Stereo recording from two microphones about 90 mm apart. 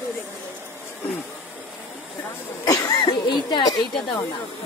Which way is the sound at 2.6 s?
40° left (ahead or behind).